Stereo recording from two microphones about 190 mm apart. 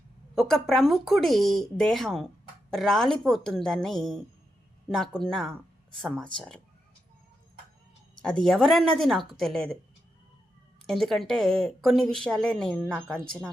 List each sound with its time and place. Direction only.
0.3 s a woman's voice: centre (ahead or behind)
8.4 s a woman's voice: centre (ahead or behind)
10.8 s a woman's voice: centre (ahead or behind)